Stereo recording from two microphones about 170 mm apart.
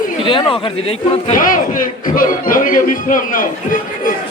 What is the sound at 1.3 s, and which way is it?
A man's voice, 55° left (ahead or behind).